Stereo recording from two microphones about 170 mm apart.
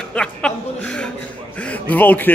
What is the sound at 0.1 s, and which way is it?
A man's voice, 5° left (ahead or behind).